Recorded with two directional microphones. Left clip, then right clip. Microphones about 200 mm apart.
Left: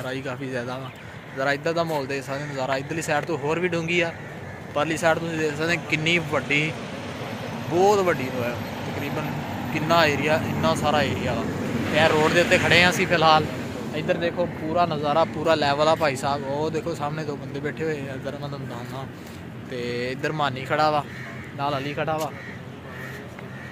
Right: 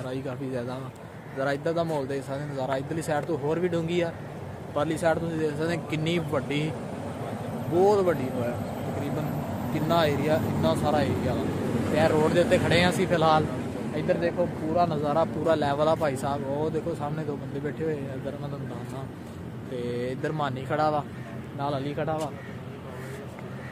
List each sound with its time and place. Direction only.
0.0 s speech: centre (ahead or behind)
7.8 s speech: 5° left (ahead or behind)
9.8 s speech: centre (ahead or behind)
11.6 s vehicle: 55° right (ahead or behind)
11.9 s speech: 5° left (ahead or behind)
19.7 s speech: 5° left (ahead or behind)